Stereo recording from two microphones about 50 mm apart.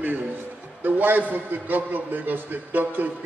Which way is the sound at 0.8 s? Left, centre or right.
Right.